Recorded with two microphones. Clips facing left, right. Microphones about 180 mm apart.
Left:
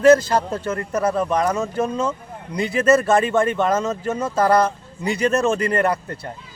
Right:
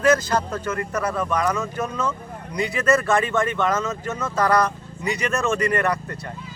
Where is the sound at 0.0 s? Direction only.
30° left (ahead or behind).